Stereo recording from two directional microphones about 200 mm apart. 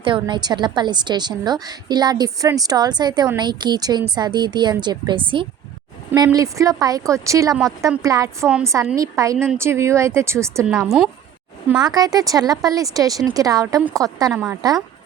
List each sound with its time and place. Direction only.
0.0 s a woman's voice: 25° right (ahead or behind)
6.1 s a woman's voice: 15° right (ahead or behind)
10.8 s a woman's voice: centre (ahead or behind)
11.8 s a woman's voice: 20° right (ahead or behind)
14.3 s a woman's voice: 5° right (ahead or behind)